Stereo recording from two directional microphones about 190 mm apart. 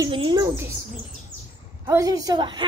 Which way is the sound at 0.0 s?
25° right (ahead or behind).